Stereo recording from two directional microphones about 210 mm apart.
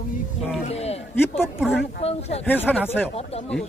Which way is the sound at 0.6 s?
30° left (ahead or behind).